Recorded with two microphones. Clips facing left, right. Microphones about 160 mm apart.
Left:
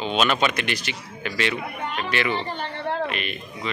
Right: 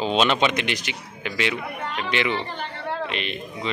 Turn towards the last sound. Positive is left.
turn(degrees=-25)  # may be behind; listen again after turning